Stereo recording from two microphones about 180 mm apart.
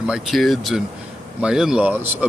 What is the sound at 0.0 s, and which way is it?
Speech, centre (ahead or behind).